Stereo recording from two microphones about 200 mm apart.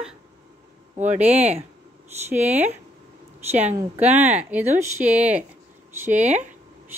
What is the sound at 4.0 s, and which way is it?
Speech, 10° right (ahead or behind).